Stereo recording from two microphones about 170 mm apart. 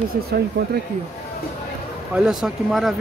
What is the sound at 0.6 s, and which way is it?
Speech, 90° right.